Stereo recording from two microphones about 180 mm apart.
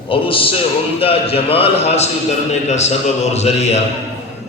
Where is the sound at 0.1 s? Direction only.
30° left (ahead or behind).